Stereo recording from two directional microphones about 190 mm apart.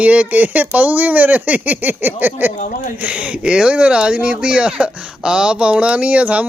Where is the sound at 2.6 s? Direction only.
45° left (ahead or behind).